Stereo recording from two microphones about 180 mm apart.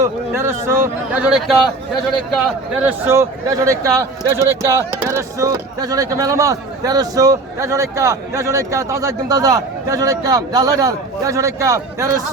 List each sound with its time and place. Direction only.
0.0 s speech: 15° right (ahead or behind)
2.8 s speech: 15° right (ahead or behind)